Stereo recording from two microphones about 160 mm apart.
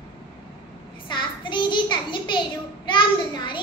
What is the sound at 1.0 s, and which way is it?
Child singing, 30° left (ahead or behind).